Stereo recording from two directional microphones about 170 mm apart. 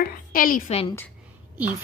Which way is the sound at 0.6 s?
35° left (ahead or behind).